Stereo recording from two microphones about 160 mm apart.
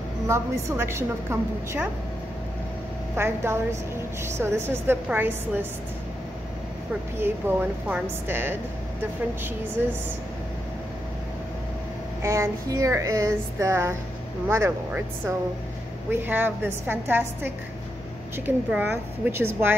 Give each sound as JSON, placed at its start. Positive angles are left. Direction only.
{"t": 0.3, "sound": "a woman's voice", "side_deg": -15}
{"t": 3.2, "sound": "a woman's voice", "side_deg": -15}
{"t": 7.2, "sound": "a woman's voice", "side_deg": -15}
{"t": 12.2, "sound": "a sound", "side_deg": -20}
{"t": 14.5, "sound": "a woman's voice", "side_deg": -15}